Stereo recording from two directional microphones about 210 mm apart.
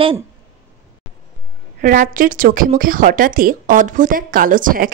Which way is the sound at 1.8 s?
40° right (ahead or behind).